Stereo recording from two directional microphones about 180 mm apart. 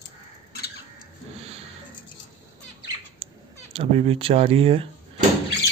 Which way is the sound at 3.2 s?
35° right (ahead or behind).